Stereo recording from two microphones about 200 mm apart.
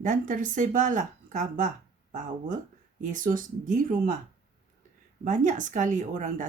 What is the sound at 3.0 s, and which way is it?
Speech, 40° right (ahead or behind).